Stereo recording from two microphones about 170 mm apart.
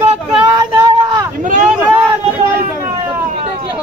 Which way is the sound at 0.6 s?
25° right (ahead or behind).